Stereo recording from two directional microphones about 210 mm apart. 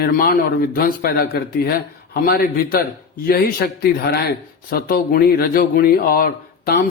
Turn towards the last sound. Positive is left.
turn(degrees=45)  # may be behind; listen again after turning